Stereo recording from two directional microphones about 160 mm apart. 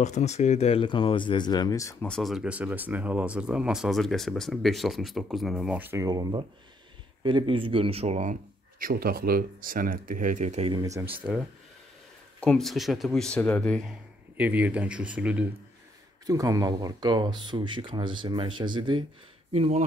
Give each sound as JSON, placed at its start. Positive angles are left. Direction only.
{"t": 0.0, "sound": "speech", "side_deg": 45}
{"t": 2.0, "sound": "speech", "side_deg": 0}
{"t": 6.0, "sound": "a man's voice", "side_deg": -25}
{"t": 11.0, "sound": "speech", "side_deg": -10}
{"t": 12.4, "sound": "speech", "side_deg": 5}
{"t": 14.3, "sound": "speech", "side_deg": -10}
{"t": 16.3, "sound": "speech", "side_deg": -20}